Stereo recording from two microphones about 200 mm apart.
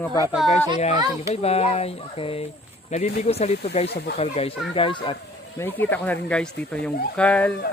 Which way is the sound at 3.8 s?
55° left (ahead or behind).